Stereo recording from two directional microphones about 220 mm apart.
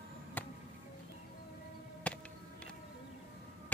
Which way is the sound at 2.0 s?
5° left (ahead or behind).